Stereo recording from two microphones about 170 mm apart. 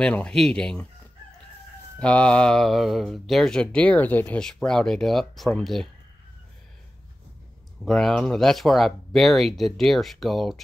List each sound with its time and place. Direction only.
0.0 s speech: 5° left (ahead or behind)
2.0 s speech: 5° left (ahead or behind)
7.8 s speech: centre (ahead or behind)